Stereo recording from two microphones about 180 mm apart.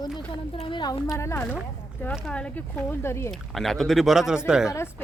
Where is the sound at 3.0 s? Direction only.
15° left (ahead or behind).